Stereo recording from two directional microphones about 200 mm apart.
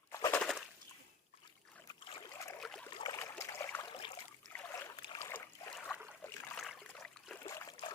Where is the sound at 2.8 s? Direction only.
20° left (ahead or behind).